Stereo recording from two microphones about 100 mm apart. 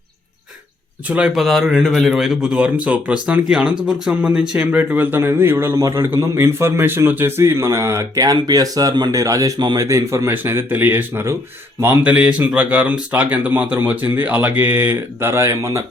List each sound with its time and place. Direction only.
1.0 s a man's voice: 10° right (ahead or behind); by 15.8 s 30° right (ahead or behind)